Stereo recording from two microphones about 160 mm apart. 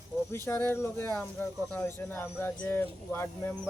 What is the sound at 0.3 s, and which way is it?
Speech, 15° left (ahead or behind).